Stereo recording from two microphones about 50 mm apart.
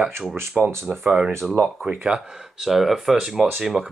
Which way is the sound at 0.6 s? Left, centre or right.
Centre.